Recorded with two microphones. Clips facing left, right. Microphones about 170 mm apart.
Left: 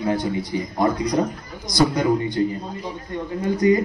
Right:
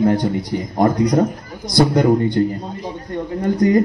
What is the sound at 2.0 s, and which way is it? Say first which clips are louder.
A man's voice: right 5 dB; 55° right (ahead or behind).